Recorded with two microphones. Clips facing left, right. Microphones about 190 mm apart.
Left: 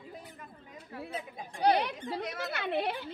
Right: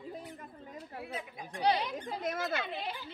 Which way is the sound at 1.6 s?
55° left (ahead or behind).